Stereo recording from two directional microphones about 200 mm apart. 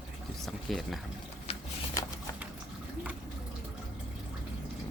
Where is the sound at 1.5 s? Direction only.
30° left (ahead or behind).